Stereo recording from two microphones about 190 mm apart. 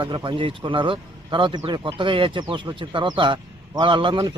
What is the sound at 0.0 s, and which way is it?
Speech, 25° right (ahead or behind).